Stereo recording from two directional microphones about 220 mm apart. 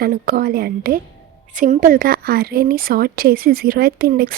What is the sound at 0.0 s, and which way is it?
A woman's voice, 40° right (ahead or behind).